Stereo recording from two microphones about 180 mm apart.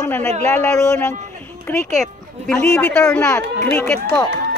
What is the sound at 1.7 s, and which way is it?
Speech, 5° left (ahead or behind).